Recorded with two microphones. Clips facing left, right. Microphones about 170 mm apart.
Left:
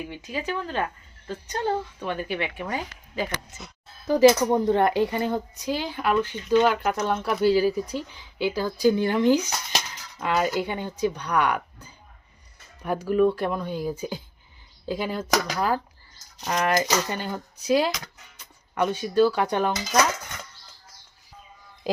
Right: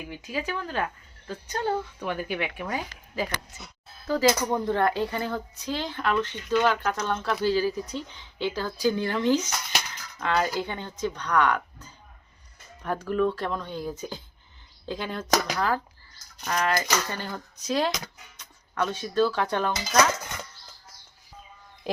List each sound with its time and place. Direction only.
0.1 s speech: 5° right (ahead or behind)
4.0 s speech: 20° left (ahead or behind)